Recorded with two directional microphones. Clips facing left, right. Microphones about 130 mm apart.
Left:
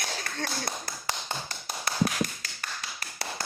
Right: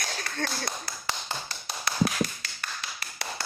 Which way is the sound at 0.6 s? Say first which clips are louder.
Even; 45° left (ahead or behind).